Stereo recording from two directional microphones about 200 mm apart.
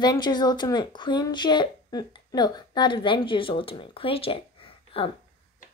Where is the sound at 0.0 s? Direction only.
20° left (ahead or behind).